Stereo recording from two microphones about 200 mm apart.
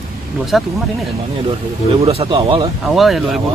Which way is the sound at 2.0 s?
25° right (ahead or behind).